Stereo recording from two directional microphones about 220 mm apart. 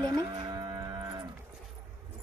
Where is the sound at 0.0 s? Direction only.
20° right (ahead or behind).